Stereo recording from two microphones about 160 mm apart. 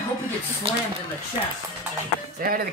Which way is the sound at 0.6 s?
35° right (ahead or behind).